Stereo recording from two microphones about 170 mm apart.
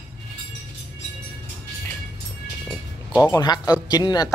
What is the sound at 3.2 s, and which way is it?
Speech, 20° left (ahead or behind).